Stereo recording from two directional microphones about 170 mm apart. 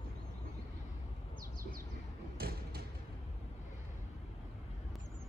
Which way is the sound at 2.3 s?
65° right (ahead or behind).